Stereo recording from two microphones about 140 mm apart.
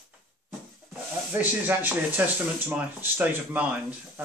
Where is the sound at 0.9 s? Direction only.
10° right (ahead or behind).